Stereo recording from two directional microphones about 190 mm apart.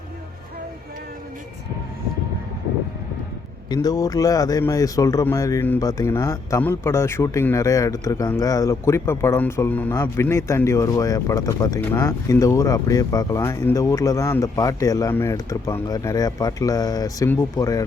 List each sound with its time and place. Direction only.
3.7 s speech: 20° left (ahead or behind)